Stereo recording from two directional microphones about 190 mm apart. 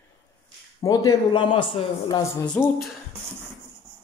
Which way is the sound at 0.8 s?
15° left (ahead or behind).